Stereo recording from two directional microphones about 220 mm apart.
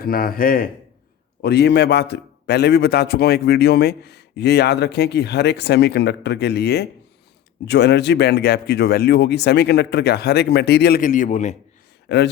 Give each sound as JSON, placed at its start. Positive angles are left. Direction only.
{"t": 0.0, "sound": "a man's voice", "side_deg": 40}
{"t": 12.0, "sound": "speech", "side_deg": 50}